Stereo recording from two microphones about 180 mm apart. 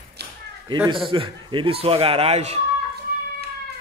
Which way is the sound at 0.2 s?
60° right (ahead or behind).